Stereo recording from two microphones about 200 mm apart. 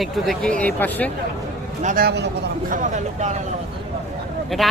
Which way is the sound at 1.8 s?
40° right (ahead or behind).